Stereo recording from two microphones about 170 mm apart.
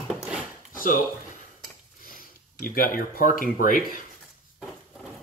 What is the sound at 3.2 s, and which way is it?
Speech, 50° left (ahead or behind).